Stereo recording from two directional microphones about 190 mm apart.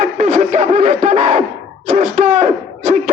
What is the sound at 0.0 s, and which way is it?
Snicker, 35° right (ahead or behind).